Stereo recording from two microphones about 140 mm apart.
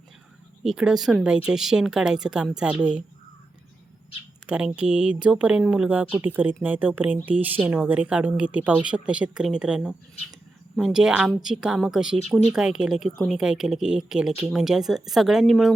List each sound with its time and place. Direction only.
0.6 s speech: 5° right (ahead or behind)
4.4 s speech: 10° right (ahead or behind)